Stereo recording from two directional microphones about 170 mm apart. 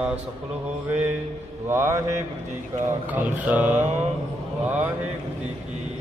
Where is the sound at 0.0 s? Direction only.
10° right (ahead or behind).